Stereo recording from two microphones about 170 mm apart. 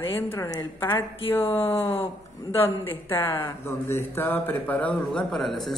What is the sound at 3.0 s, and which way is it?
A woman's voice, 15° left (ahead or behind).